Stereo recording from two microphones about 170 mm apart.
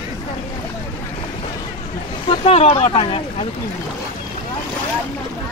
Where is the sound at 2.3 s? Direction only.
35° left (ahead or behind).